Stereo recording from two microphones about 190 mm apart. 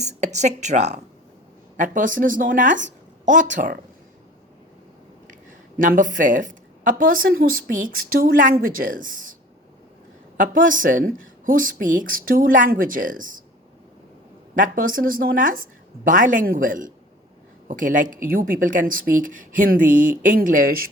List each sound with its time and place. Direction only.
0.0 s a woman's voice: 35° right (ahead or behind)
5.8 s a woman's voice: 45° right (ahead or behind)
10.3 s a woman's voice: 45° right (ahead or behind)
14.5 s a woman's voice: 45° right (ahead or behind)